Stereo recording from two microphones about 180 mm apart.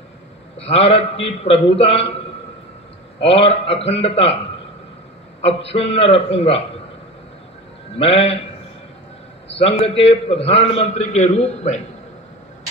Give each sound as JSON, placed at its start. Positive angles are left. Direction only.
{"t": 0.6, "sound": "a man's voice", "side_deg": 35}
{"t": 3.2, "sound": "a man's voice", "side_deg": 35}
{"t": 5.4, "sound": "a man's voice", "side_deg": 35}
{"t": 8.0, "sound": "a man's voice", "side_deg": 35}
{"t": 9.8, "sound": "a man's voice", "side_deg": 35}